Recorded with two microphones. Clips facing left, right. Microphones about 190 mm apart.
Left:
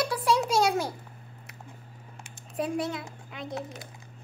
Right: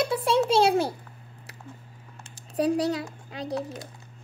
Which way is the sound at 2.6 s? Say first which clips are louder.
Right 6 dB; 35° right (ahead or behind).